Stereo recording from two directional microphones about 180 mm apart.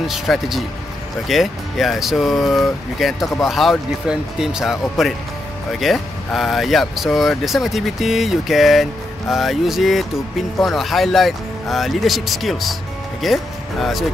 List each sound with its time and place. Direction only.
0.0 s speech: centre (ahead or behind)